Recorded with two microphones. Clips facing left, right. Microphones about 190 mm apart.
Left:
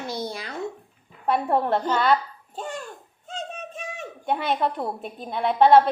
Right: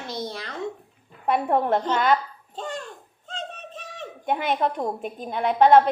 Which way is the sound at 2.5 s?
10° left (ahead or behind).